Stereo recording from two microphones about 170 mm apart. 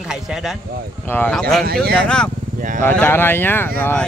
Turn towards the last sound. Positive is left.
turn(degrees=10)  # may be behind; listen again after turning